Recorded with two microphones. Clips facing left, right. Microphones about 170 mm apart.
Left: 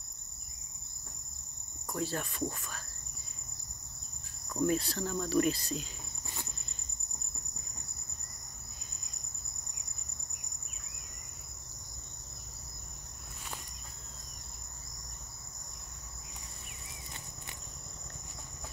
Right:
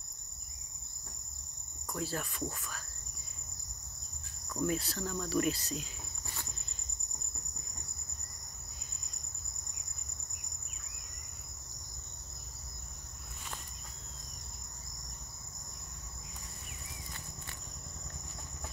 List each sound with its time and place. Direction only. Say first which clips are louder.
1.9 s speech: left 2 dB; centre (ahead or behind)
4.6 s speech: left 3 dB; 5° right (ahead or behind)